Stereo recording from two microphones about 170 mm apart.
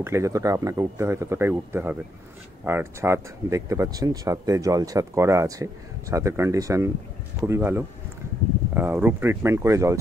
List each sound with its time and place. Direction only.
0.0 s speech: 15° right (ahead or behind)